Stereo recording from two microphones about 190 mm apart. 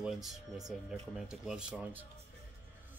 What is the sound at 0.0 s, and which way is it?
Speech, centre (ahead or behind).